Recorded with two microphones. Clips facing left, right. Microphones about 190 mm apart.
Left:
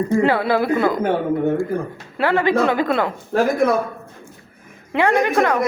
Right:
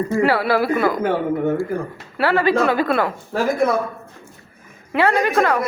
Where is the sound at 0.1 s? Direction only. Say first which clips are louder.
Left 1 dB; 20° left (ahead or behind).